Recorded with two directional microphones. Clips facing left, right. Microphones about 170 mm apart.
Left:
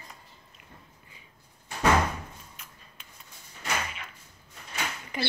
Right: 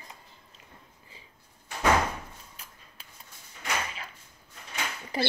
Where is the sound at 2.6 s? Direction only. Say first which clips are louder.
Even; 30° right (ahead or behind).